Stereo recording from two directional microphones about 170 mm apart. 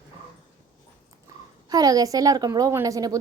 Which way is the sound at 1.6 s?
20° right (ahead or behind).